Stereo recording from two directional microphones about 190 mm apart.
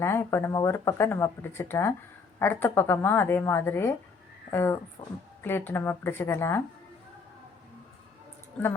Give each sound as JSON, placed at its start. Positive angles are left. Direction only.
{"t": 0.0, "sound": "speech", "side_deg": 15}
{"t": 5.0, "sound": "speech", "side_deg": 30}
{"t": 5.4, "sound": "speech", "side_deg": 10}
{"t": 8.6, "sound": "a woman's voice", "side_deg": 5}